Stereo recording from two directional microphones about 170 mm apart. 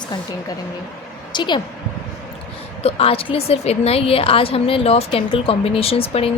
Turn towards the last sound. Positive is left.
turn(degrees=35)  # may be behind; listen again after turning